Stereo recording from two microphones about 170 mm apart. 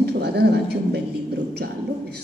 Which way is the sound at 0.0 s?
70° right (ahead or behind).